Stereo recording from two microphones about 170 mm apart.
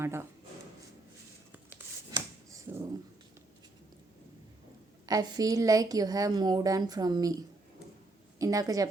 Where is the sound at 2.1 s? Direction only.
20° right (ahead or behind).